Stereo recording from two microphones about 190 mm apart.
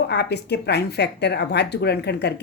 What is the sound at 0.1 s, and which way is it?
Speech, 60° left (ahead or behind).